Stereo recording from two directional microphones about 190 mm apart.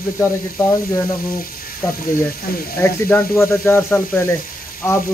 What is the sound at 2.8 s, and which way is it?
Sizzle, 10° left (ahead or behind).